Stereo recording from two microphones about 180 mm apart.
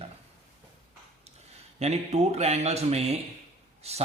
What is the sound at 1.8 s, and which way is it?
Speech, 35° right (ahead or behind).